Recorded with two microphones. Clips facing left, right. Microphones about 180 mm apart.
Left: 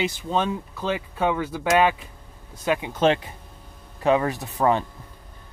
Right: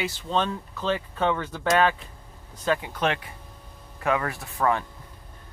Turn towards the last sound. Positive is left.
turn(degrees=20)  # may be behind; listen again after turning